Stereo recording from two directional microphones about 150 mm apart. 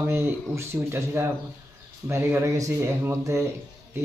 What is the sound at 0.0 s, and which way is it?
Speech, 15° right (ahead or behind).